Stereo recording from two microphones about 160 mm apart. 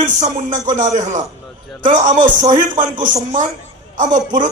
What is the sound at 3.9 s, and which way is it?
Speech, 50° right (ahead or behind).